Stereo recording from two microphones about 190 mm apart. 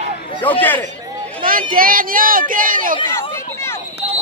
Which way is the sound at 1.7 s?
50° right (ahead or behind).